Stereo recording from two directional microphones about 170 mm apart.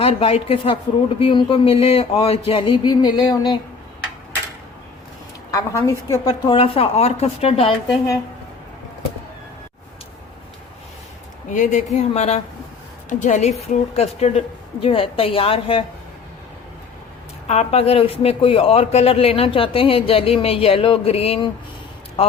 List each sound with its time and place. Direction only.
0.0 s speech: 35° left (ahead or behind)
5.5 s speech: 20° left (ahead or behind); by 7.7 s 35° left (ahead or behind)
11.5 s a woman's voice: 45° left (ahead or behind)
17.5 s a man's voice: 40° left (ahead or behind)